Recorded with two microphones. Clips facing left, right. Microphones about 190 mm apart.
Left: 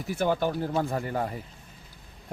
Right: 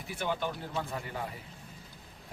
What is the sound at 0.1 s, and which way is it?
Speech, 45° left (ahead or behind).